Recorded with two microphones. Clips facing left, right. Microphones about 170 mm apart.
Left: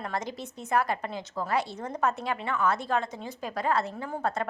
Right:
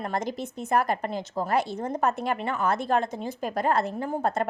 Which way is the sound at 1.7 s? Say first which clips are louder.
Right 5 dB; 30° right (ahead or behind).